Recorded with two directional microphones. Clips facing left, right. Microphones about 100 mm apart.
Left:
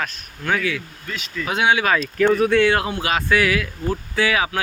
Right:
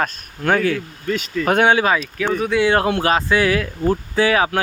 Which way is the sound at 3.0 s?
30° right (ahead or behind).